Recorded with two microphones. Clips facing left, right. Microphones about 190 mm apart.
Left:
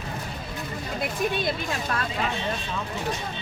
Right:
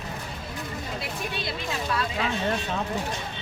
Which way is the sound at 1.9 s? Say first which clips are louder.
Right 3 dB; 50° left (ahead or behind).